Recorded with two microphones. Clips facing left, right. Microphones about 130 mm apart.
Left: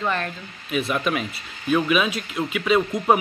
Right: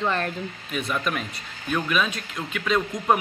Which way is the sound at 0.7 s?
5° left (ahead or behind).